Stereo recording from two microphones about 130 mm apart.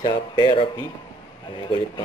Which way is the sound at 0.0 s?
30° left (ahead or behind).